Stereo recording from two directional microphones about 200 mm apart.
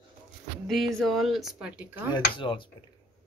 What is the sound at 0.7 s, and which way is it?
Speech, centre (ahead or behind).